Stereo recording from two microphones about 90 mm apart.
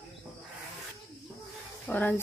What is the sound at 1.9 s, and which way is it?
Speech, 20° left (ahead or behind).